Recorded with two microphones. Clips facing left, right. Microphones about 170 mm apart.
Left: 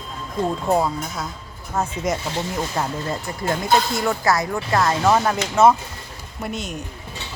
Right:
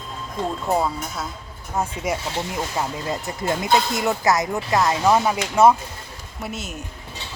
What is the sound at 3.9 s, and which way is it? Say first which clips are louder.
Dishes: even; 20° right (ahead or behind).